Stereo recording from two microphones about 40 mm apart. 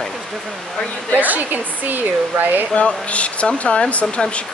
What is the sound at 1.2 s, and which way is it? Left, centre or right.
Speech, right.